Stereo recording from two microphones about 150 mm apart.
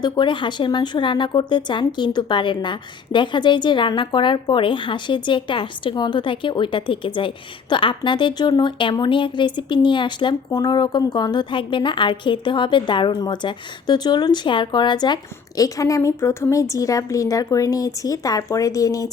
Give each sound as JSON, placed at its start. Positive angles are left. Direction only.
{"t": 0.0, "sound": "speech", "side_deg": 30}